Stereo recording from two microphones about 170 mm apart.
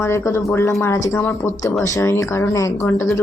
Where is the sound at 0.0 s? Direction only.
15° left (ahead or behind).